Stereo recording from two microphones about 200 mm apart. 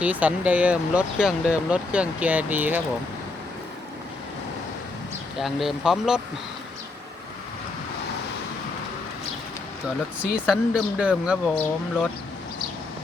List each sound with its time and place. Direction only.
0.0 s speech: 5° right (ahead or behind)
5.4 s speech: centre (ahead or behind)
10.3 s speech: 5° right (ahead or behind)